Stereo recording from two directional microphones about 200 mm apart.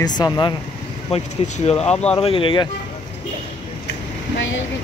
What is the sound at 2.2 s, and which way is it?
Speech, 25° left (ahead or behind).